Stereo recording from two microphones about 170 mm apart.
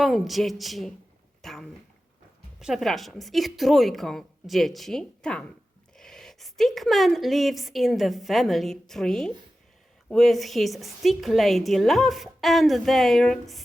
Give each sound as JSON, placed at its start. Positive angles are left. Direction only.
{"t": 0.0, "sound": "a woman's voice", "side_deg": 0}
{"t": 1.4, "sound": "dog", "side_deg": 0}
{"t": 2.6, "sound": "a woman's voice", "side_deg": 0}